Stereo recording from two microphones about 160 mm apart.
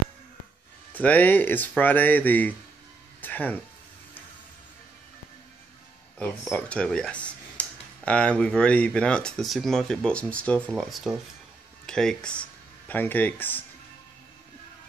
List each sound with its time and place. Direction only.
0.9 s speech: 10° left (ahead or behind)
3.2 s music: 10° left (ahead or behind)
6.1 s speech: 10° left (ahead or behind)